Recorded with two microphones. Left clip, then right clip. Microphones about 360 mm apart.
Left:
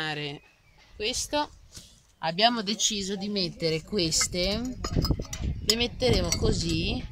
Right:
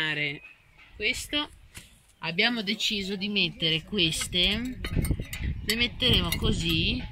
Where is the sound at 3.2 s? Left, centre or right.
Left.